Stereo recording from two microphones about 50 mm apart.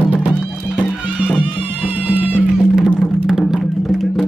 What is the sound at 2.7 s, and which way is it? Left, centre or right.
Music, centre.